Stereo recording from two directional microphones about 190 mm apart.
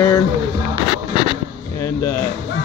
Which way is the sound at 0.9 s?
25° left (ahead or behind).